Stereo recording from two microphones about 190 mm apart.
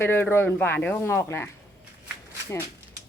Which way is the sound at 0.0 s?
10° left (ahead or behind).